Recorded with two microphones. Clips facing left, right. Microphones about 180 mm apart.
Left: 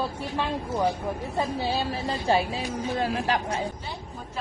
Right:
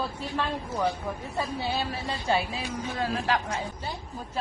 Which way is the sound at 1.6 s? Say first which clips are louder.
Left 3 dB; 35° left (ahead or behind).